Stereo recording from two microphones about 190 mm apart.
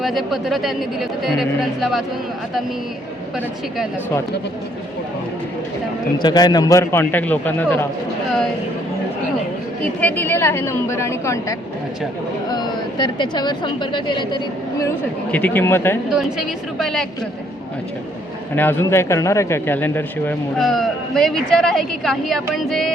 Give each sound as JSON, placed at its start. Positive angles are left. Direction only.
{"t": 0.0, "sound": "a woman's voice", "side_deg": 0}
{"t": 6.2, "sound": "a man's voice", "side_deg": 20}
{"t": 9.8, "sound": "a man's voice", "side_deg": 10}
{"t": 15.3, "sound": "a man's voice", "side_deg": 10}
{"t": 16.1, "sound": "a woman's voice", "side_deg": 0}
{"t": 18.5, "sound": "a man's voice", "side_deg": 10}